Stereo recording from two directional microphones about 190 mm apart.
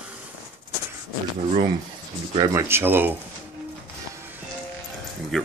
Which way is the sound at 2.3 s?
15° right (ahead or behind).